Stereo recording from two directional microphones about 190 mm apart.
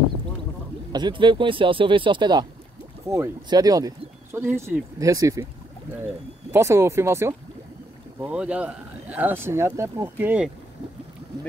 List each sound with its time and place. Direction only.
0.9 s speech: 25° right (ahead or behind)
6.5 s speech: 15° right (ahead or behind)